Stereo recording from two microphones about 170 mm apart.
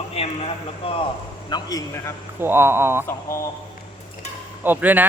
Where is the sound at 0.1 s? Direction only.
35° left (ahead or behind).